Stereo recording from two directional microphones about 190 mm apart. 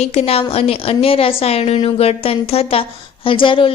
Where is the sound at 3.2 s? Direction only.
25° left (ahead or behind).